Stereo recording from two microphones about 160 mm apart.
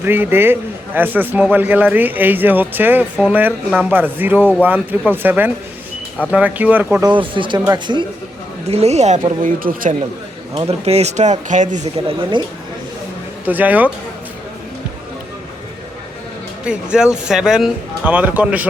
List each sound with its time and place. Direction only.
0.0 s a man's voice: 15° right (ahead or behind)
7.0 s speech: 30° right (ahead or behind)
8.7 s speech: 40° right (ahead or behind); by 9.9 s 60° right (ahead or behind)
10.5 s speech: 35° right (ahead or behind); by 11.8 s 50° right (ahead or behind)
12.0 s speech: 30° right (ahead or behind)
13.4 s a man's voice: 10° right (ahead or behind)
16.6 s speech: 5° right (ahead or behind)